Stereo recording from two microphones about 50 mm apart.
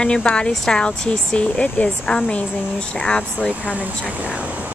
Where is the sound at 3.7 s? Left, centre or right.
Right.